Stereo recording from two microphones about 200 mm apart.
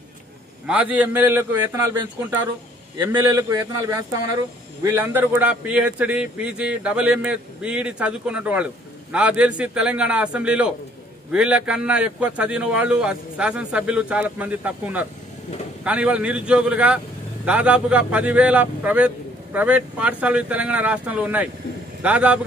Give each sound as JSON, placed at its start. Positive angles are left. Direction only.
{"t": 0.7, "sound": "speech", "side_deg": -5}
{"t": 3.0, "sound": "a man's voice", "side_deg": -15}